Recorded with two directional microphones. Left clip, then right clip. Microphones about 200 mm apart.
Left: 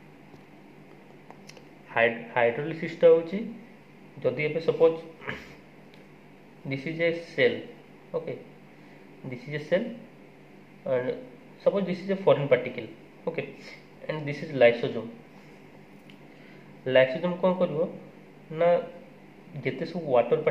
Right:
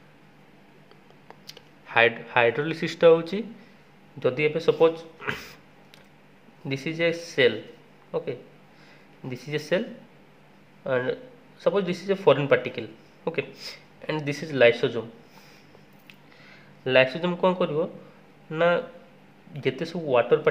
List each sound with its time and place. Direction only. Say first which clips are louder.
1.9 s a man's voice: right 4 dB; 55° right (ahead or behind)
6.7 s a man's voice: right 2 dB; 50° right (ahead or behind)
9.3 s a man's voice: right 1 dB; 50° right (ahead or behind)
16.8 s a man's voice: right 1 dB; 50° right (ahead or behind)